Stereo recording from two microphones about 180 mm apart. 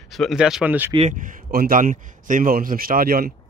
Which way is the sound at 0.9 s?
45° right (ahead or behind).